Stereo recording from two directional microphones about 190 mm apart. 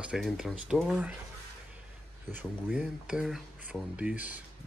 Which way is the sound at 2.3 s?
5° right (ahead or behind).